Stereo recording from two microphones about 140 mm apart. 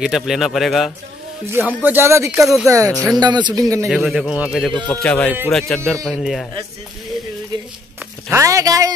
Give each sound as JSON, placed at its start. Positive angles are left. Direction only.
{"t": 0.0, "sound": "a man's voice", "side_deg": 0}
{"t": 1.5, "sound": "a woman's voice", "side_deg": -15}
{"t": 2.4, "sound": "a man's voice", "side_deg": 0}
{"t": 3.2, "sound": "speech", "side_deg": -30}
{"t": 3.8, "sound": "a man's voice", "side_deg": 0}
{"t": 4.7, "sound": "a man's voice", "side_deg": 10}
{"t": 8.3, "sound": "a woman's voice", "side_deg": -20}